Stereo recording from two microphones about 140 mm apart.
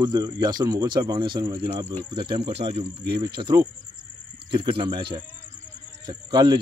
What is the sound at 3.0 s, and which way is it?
Speech, 35° right (ahead or behind).